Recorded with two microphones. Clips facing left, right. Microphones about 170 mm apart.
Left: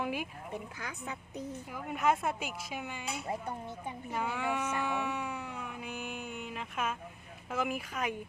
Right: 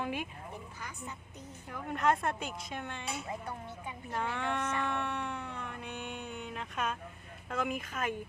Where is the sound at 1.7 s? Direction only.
5° left (ahead or behind).